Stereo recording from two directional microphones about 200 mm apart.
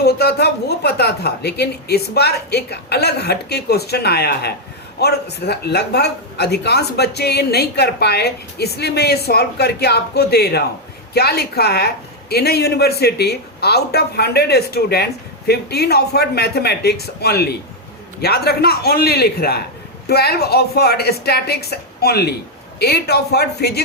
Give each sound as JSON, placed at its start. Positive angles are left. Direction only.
{"t": 0.0, "sound": "speech", "side_deg": 55}